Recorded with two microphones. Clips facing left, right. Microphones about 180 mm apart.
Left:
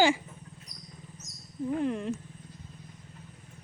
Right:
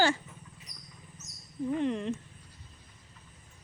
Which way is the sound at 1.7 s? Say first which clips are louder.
Even; 5° left (ahead or behind).